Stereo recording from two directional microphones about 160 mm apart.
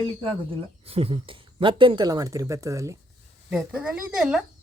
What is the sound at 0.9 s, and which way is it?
Speech, 40° right (ahead or behind).